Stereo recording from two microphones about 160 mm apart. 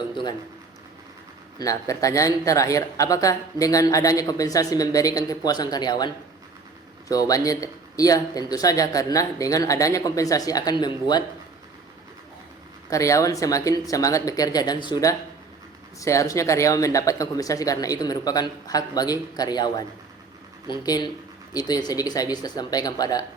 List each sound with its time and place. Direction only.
0.1 s a man's voice: 30° left (ahead or behind)
1.5 s speech: 20° left (ahead or behind)
7.1 s speech: 20° left (ahead or behind)
12.9 s speech: 20° left (ahead or behind)